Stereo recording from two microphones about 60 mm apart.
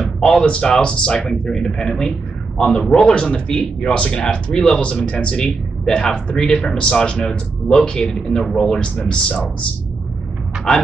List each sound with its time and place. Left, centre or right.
0.0 s speech: centre
9.1 s speech: left
10.7 s speech: centre